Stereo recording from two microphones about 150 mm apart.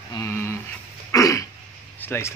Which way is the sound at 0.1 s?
20° left (ahead or behind).